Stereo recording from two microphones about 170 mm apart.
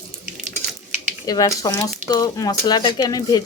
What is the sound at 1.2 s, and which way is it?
A woman's voice, 20° left (ahead or behind).